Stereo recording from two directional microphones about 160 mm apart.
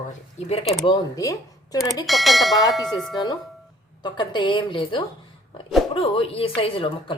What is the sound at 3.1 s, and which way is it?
A woman's voice, 25° left (ahead or behind).